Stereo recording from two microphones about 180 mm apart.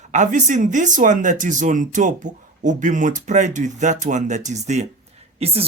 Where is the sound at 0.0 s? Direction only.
40° right (ahead or behind).